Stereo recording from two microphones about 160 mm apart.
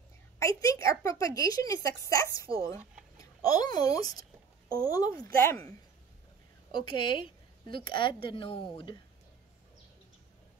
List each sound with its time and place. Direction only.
0.4 s a woman's voice: 20° left (ahead or behind)
6.7 s a woman's voice: 30° left (ahead or behind)